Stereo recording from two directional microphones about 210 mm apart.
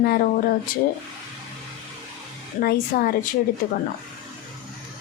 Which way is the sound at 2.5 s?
45° left (ahead or behind).